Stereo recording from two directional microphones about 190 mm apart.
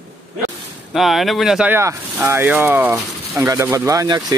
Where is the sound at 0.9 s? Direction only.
Centre (ahead or behind).